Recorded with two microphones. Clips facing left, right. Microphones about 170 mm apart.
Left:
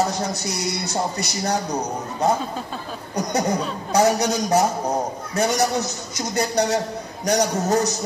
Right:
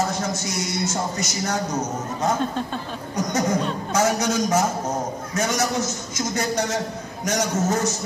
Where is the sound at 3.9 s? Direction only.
35° left (ahead or behind).